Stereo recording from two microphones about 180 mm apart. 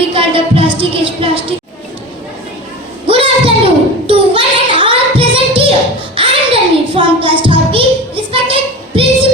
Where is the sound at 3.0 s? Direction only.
30° right (ahead or behind).